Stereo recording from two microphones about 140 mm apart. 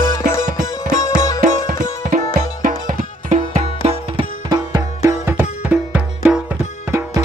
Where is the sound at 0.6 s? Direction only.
60° right (ahead or behind).